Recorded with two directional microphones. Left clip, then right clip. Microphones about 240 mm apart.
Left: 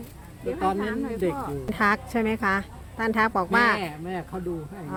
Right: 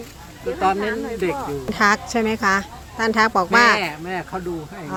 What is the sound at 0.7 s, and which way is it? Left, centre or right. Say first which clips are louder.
Speech: right 5 dB; left.